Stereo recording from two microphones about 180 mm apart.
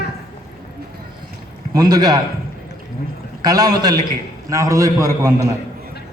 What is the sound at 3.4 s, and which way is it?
A man's voice, 20° right (ahead or behind).